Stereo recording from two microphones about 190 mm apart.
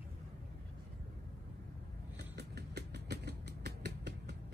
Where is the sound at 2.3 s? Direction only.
60° right (ahead or behind).